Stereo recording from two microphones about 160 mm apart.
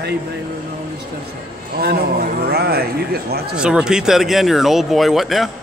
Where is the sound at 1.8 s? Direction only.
75° right (ahead or behind).